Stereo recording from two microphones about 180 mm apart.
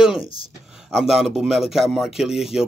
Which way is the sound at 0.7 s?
Centre (ahead or behind).